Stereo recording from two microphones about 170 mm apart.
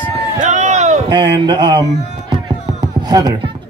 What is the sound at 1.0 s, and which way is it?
Speech, 25° right (ahead or behind).